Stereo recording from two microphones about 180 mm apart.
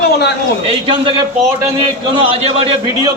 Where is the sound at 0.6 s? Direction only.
30° right (ahead or behind).